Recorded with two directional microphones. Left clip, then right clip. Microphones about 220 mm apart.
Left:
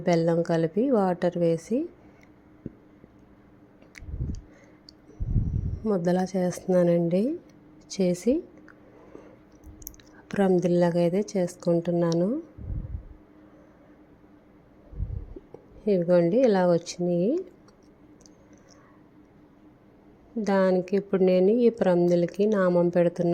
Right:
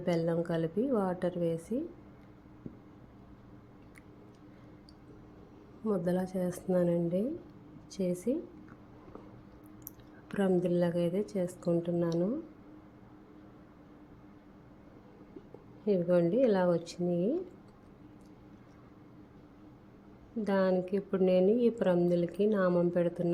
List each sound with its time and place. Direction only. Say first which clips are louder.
0.0 s a woman's voice: left 8 dB; 30° left (ahead or behind)
5.8 s a woman's voice: left 7 dB; 30° left (ahead or behind)
9.8 s a woman's voice: left 11 dB; 25° left (ahead or behind)
15.8 s a woman's voice: left 6 dB; 25° left (ahead or behind)
20.4 s a woman's voice: left 6 dB; 30° left (ahead or behind)